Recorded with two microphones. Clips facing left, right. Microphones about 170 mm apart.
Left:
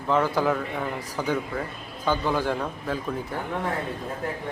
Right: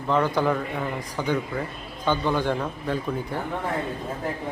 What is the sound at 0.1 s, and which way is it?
A man's voice, 5° left (ahead or behind).